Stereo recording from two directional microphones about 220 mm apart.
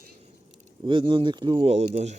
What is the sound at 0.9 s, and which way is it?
Speech, 20° right (ahead or behind).